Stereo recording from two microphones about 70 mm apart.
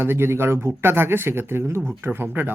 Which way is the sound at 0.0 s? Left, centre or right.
Right.